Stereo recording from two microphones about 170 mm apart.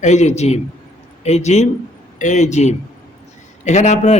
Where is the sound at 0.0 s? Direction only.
45° left (ahead or behind).